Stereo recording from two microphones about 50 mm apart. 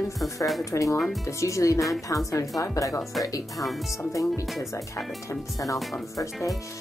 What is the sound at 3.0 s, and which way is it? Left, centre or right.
Speech, centre.